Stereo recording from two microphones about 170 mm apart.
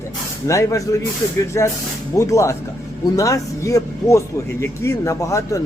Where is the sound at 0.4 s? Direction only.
15° left (ahead or behind).